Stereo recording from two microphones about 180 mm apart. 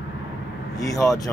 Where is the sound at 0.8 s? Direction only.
20° left (ahead or behind).